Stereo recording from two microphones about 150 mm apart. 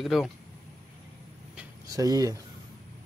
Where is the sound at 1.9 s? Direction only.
25° right (ahead or behind).